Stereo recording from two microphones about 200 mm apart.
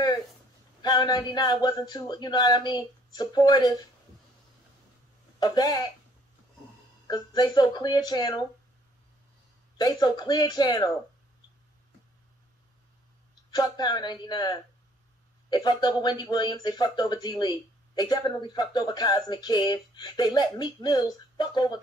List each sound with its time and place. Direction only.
0.8 s speech: 20° left (ahead or behind)
5.4 s speech: 20° left (ahead or behind)
7.1 s speech: 20° left (ahead or behind)
9.8 s speech: 20° left (ahead or behind)
13.3 s speech: 20° left (ahead or behind)